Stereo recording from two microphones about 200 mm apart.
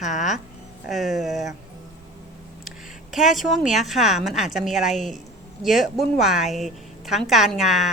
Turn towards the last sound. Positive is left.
turn(degrees=0)  # may be behind; listen again after turning